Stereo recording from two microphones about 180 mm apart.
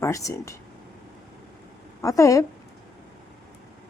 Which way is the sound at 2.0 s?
15° left (ahead or behind).